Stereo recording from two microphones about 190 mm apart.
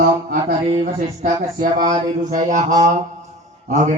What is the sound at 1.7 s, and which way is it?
A man's voice, 40° right (ahead or behind).